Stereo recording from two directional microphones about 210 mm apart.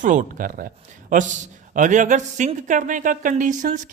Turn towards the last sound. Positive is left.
turn(degrees=-35)  # may be behind; listen again after turning